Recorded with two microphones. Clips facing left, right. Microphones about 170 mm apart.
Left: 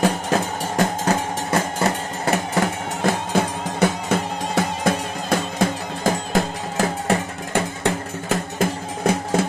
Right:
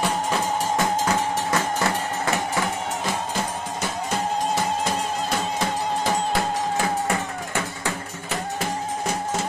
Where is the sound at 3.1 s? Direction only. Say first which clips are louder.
Left 10 dB; 60° left (ahead or behind).